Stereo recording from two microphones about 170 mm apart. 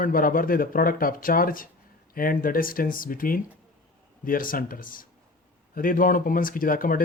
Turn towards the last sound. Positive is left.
turn(degrees=55)  # may be behind; listen again after turning